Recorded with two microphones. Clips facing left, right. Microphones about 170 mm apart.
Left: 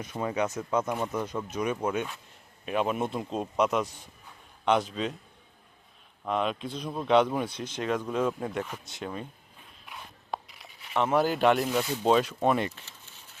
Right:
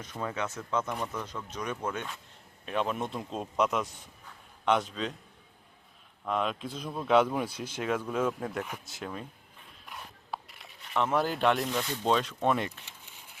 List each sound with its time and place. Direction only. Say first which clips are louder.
0.0 s speech: left 5 dB; 10° left (ahead or behind)
0.9 s speech: left 4 dB; 25° left (ahead or behind)
1.5 s speech: left 4 dB; 10° left (ahead or behind)
6.2 s speech: left 2 dB; centre (ahead or behind)
12.8 s a sound: even; 15° right (ahead or behind)